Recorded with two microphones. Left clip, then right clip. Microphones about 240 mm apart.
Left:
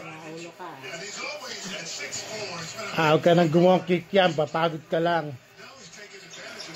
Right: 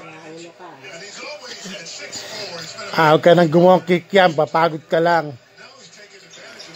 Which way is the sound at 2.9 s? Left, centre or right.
Right.